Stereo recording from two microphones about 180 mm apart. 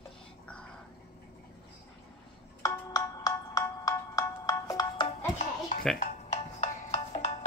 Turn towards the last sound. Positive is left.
turn(degrees=35)  # may be behind; listen again after turning